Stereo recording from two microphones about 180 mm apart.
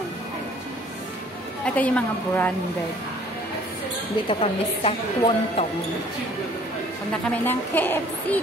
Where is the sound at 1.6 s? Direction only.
10° left (ahead or behind).